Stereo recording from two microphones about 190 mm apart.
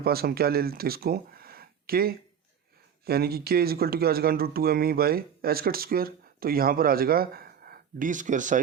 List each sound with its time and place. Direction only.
0.0 s speech: 55° right (ahead or behind)